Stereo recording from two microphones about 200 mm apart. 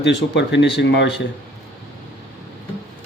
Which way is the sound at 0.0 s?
60° left (ahead or behind).